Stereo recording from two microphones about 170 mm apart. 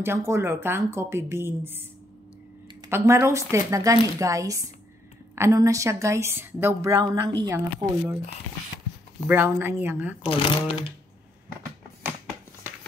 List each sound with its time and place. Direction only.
0.0 s a woman's voice: 15° right (ahead or behind)
2.9 s a woman's voice: 15° right (ahead or behind)
9.2 s a woman's voice: 10° right (ahead or behind)
10.2 s speech: 30° left (ahead or behind)